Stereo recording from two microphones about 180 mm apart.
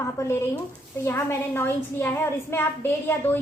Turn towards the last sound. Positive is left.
turn(degrees=10)  # may be behind; listen again after turning